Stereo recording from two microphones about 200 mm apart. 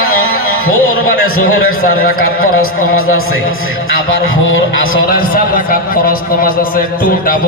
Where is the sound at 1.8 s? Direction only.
45° left (ahead or behind).